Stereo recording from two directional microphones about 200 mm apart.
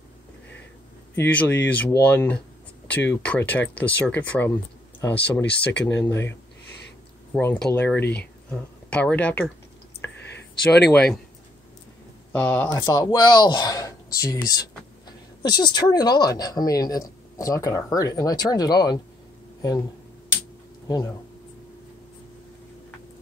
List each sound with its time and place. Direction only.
1.1 s speech: 10° left (ahead or behind)
7.3 s speech: 10° left (ahead or behind)
10.9 s speech: 5° left (ahead or behind)
12.3 s speech: 10° left (ahead or behind)